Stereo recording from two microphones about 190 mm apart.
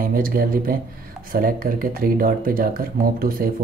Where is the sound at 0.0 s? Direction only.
50° right (ahead or behind).